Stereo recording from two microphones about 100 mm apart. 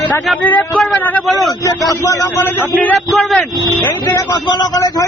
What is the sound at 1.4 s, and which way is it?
Speech, 35° left (ahead or behind).